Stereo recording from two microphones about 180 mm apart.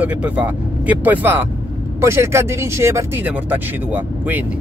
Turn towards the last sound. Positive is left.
turn(degrees=-10)  # may be behind; listen again after turning